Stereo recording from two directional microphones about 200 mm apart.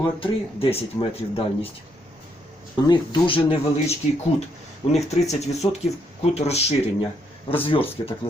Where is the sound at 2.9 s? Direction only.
25° left (ahead or behind).